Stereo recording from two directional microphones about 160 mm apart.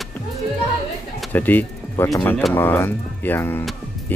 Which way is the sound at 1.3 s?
10° left (ahead or behind).